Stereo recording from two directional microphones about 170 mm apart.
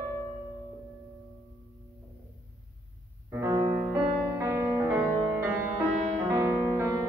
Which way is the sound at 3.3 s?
15° right (ahead or behind).